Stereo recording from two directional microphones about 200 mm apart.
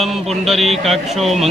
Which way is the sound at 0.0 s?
Centre (ahead or behind).